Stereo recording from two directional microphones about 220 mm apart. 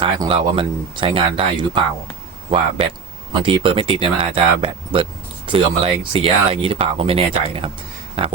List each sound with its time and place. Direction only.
0.0 s speech: 25° right (ahead or behind)